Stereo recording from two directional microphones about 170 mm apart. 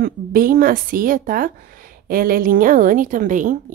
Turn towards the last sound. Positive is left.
turn(degrees=-50)  # may be behind; listen again after turning